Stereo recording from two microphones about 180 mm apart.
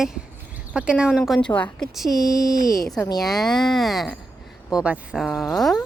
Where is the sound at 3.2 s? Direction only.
Centre (ahead or behind).